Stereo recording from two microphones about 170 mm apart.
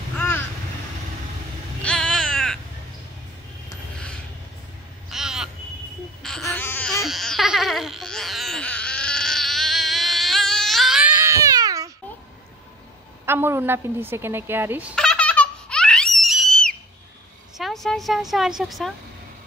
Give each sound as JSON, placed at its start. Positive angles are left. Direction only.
{"t": 1.8, "sound": "a sound", "side_deg": 5}
{"t": 5.1, "sound": "a sound", "side_deg": -5}
{"t": 6.4, "sound": "babbling", "side_deg": 10}
{"t": 7.1, "sound": "baby cry", "side_deg": 0}
{"t": 13.2, "sound": "fowl", "side_deg": -15}
{"t": 15.0, "sound": "baby laughter", "side_deg": 5}
{"t": 17.6, "sound": "a woman's voice", "side_deg": 0}